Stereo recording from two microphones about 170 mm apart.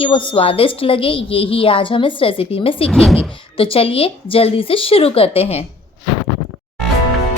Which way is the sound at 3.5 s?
30° left (ahead or behind).